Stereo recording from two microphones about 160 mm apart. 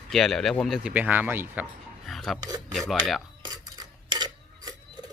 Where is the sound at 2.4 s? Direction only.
25° right (ahead or behind).